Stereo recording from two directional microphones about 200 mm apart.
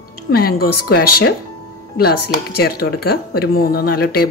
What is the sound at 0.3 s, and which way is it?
Speech, 50° left (ahead or behind).